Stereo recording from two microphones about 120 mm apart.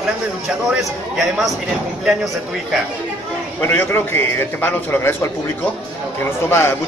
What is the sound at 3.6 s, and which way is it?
A man's voice, 20° left (ahead or behind).